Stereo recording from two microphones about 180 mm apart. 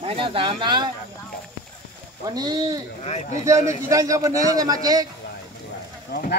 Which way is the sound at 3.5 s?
15° right (ahead or behind).